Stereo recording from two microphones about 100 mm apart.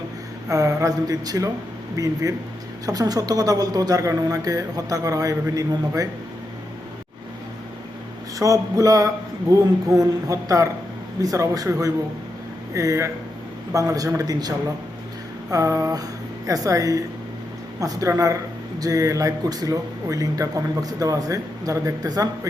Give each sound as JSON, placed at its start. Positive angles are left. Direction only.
{"t": 0.4, "sound": "speech", "side_deg": -35}
{"t": 8.4, "sound": "speech", "side_deg": -35}